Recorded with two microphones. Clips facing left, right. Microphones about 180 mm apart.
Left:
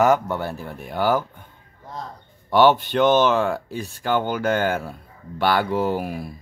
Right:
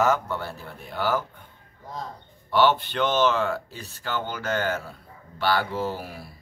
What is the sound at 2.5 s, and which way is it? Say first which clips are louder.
Speech: left 5 dB; 50° left (ahead or behind).